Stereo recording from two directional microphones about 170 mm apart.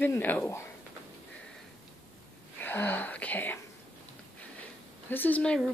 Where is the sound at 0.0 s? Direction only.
10° left (ahead or behind).